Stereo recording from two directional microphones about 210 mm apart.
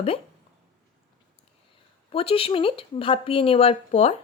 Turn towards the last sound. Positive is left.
turn(degrees=30)  # may be behind; listen again after turning